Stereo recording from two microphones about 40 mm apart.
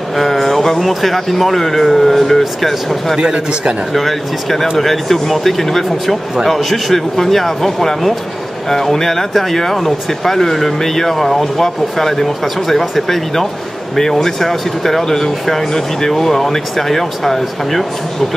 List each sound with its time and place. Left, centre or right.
0.1 s speech: centre
3.2 s speech: right
3.9 s speech: centre